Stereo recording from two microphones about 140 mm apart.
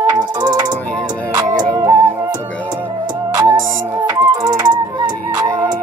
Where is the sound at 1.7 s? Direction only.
20° right (ahead or behind).